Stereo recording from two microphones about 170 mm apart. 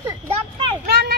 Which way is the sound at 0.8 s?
70° right (ahead or behind).